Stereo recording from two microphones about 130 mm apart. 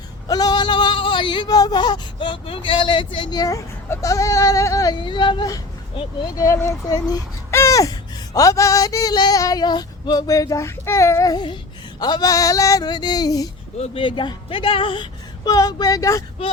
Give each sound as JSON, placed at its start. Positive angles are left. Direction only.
{"t": 0.3, "sound": "speech", "side_deg": 30}
{"t": 6.3, "sound": "speech", "side_deg": 25}
{"t": 13.7, "sound": "speech", "side_deg": 55}
{"t": 14.0, "sound": "speech", "side_deg": 40}
{"t": 15.4, "sound": "speech", "side_deg": 30}